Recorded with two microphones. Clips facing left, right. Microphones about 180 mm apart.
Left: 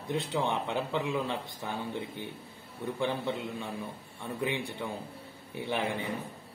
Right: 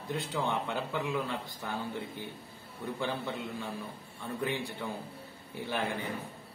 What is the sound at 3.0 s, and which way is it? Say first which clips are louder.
A man's voice: left 4 dB; 20° left (ahead or behind).